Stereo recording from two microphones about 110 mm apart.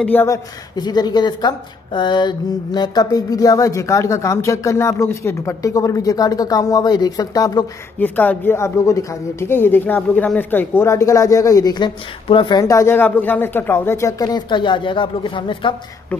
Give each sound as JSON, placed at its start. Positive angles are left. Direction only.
{"t": 0.0, "sound": "speech", "side_deg": 15}
{"t": 0.3, "sound": "a woman's voice", "side_deg": 40}
{"t": 8.0, "sound": "speech", "side_deg": 15}
{"t": 12.6, "sound": "speech", "side_deg": 25}